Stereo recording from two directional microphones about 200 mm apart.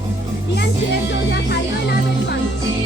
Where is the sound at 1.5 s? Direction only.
55° left (ahead or behind).